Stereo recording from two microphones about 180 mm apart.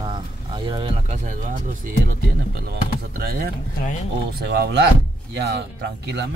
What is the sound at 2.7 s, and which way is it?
Speech, 60° right (ahead or behind).